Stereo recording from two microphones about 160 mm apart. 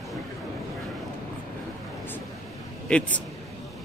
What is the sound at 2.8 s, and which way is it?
Speech, 5° left (ahead or behind).